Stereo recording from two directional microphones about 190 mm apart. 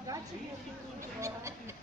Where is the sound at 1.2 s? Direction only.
15° right (ahead or behind).